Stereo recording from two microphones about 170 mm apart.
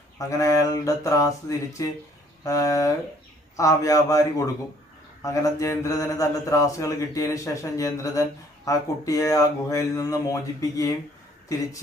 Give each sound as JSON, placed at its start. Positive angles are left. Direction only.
{"t": 0.2, "sound": "speech", "side_deg": 20}